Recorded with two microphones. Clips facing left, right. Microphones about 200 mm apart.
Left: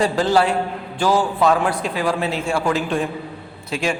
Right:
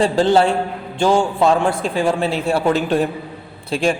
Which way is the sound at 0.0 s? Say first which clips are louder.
Right 3 dB; 30° right (ahead or behind).